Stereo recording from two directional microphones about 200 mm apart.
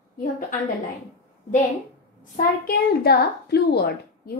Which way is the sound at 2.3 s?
50° left (ahead or behind).